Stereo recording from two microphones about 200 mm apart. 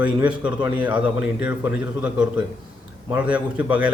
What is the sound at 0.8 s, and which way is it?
Speech, 25° right (ahead or behind).